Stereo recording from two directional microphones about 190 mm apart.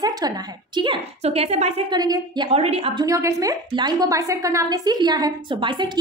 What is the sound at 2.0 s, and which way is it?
A woman's voice, 20° right (ahead or behind).